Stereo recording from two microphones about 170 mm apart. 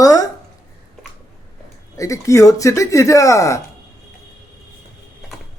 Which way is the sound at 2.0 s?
20° left (ahead or behind).